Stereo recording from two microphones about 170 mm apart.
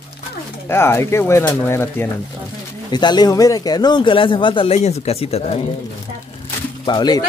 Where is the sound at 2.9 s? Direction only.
25° left (ahead or behind).